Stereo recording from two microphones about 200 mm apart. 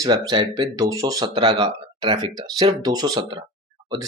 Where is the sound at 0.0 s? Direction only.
20° right (ahead or behind).